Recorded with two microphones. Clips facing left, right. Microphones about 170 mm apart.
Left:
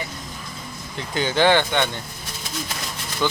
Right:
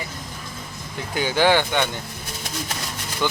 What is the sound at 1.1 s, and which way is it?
Speech, 10° right (ahead or behind).